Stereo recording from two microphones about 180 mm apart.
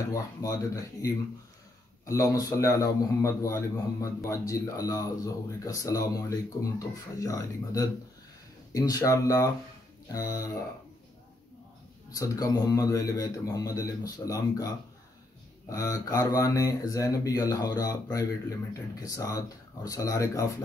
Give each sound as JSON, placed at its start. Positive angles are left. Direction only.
{"t": 0.1, "sound": "a man's voice", "side_deg": 20}
{"t": 12.1, "sound": "a man's voice", "side_deg": 20}